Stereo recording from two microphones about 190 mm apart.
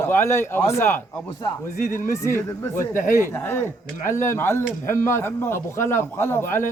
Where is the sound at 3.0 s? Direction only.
45° left (ahead or behind).